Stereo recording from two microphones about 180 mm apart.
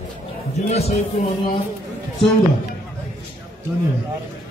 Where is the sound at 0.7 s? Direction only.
35° left (ahead or behind).